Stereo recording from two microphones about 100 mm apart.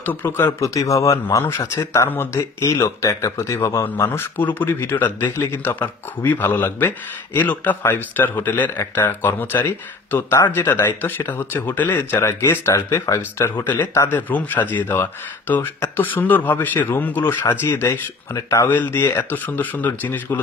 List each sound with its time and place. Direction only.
0.0 s speech: 20° left (ahead or behind)
0.7 s speech: 35° left (ahead or behind)